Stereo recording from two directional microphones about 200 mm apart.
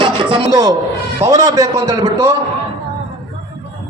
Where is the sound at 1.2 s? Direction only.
15° right (ahead or behind).